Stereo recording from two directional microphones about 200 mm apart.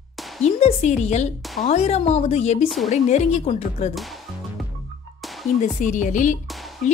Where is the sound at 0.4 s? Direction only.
35° left (ahead or behind).